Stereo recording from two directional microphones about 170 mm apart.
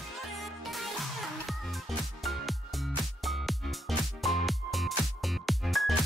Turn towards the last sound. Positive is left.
turn(degrees=0)  # may be behind; listen again after turning